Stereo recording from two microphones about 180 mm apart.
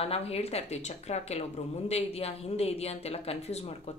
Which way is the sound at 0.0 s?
35° left (ahead or behind).